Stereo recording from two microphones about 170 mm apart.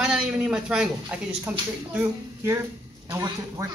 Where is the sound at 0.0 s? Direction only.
5° right (ahead or behind).